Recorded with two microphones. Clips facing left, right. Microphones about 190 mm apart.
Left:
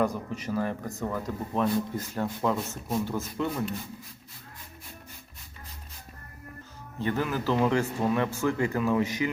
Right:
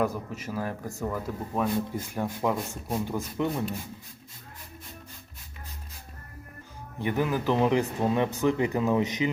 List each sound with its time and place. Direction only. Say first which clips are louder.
0.0 s speech: left 1 dB; 5° right (ahead or behind)
7.0 s speech: right 2 dB; 15° right (ahead or behind)